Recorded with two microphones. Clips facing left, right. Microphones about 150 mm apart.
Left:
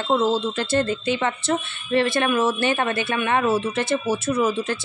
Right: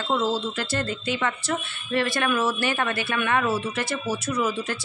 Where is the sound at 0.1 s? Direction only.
25° left (ahead or behind).